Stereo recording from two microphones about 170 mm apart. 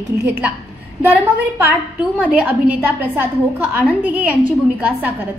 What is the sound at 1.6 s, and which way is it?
A woman's voice, 10° right (ahead or behind).